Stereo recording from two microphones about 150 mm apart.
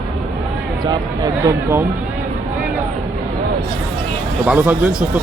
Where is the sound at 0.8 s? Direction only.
20° right (ahead or behind).